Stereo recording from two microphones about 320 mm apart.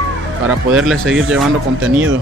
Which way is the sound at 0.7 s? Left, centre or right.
Centre.